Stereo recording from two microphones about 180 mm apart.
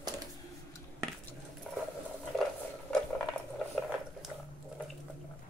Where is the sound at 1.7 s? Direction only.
Centre (ahead or behind).